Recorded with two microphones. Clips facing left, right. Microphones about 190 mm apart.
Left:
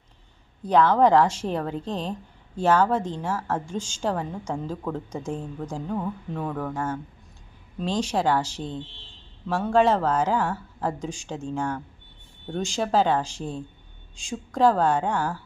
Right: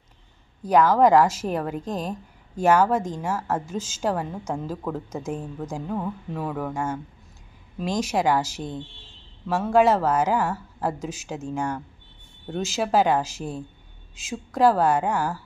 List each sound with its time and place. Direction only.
0.7 s a woman's voice: 10° right (ahead or behind)